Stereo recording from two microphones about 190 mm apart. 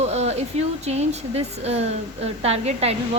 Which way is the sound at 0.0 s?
35° right (ahead or behind).